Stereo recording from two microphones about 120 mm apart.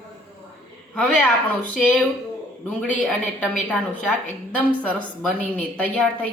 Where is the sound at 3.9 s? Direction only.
10° left (ahead or behind).